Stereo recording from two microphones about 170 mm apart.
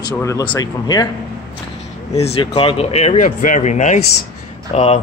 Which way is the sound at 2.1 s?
35° left (ahead or behind).